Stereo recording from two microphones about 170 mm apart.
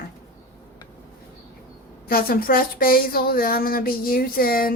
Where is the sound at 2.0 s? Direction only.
60° left (ahead or behind).